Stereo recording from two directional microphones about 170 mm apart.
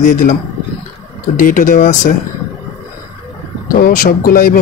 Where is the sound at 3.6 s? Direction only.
60° left (ahead or behind).